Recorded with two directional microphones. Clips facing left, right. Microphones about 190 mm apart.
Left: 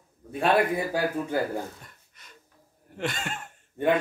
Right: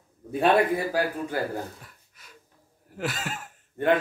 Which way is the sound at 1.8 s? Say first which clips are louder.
Right 1 dB; 5° right (ahead or behind).